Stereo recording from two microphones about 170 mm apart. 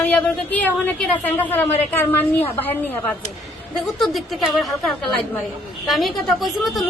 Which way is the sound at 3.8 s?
Centre (ahead or behind).